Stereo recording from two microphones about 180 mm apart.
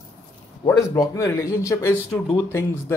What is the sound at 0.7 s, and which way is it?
Speech, 15° left (ahead or behind).